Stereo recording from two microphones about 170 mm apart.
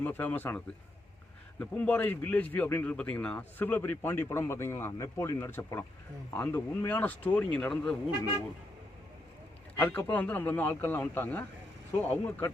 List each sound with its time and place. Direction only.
0.0 s speech: 10° left (ahead or behind)
9.7 s speech: 10° left (ahead or behind)